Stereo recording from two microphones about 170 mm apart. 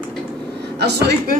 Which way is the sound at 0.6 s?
75° right (ahead or behind).